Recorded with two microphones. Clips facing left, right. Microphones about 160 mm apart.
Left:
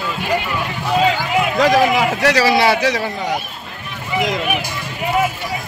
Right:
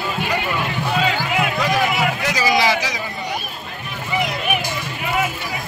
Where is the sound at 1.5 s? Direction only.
90° left; by 2.5 s 70° left (ahead or behind).